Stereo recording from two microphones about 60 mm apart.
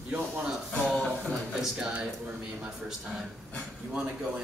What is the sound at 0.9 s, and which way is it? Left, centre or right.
Music, centre.